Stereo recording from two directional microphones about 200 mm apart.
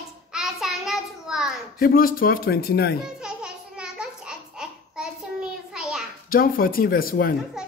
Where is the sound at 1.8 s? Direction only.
45° left (ahead or behind).